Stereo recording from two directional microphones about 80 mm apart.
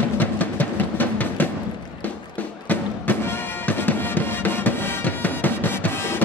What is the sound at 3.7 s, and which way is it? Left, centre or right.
Music, left.